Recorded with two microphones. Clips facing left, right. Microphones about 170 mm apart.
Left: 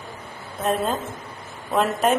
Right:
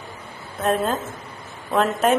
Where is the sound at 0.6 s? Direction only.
Centre (ahead or behind).